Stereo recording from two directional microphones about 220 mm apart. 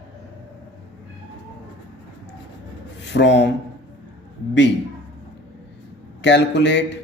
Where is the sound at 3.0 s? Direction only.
50° left (ahead or behind).